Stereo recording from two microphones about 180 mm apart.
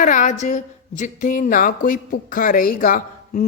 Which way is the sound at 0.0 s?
45° left (ahead or behind).